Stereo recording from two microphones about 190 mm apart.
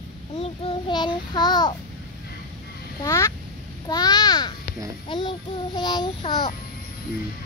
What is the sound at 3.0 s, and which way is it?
Speech, 15° left (ahead or behind).